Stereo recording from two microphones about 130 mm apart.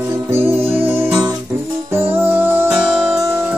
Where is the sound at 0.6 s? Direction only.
45° right (ahead or behind).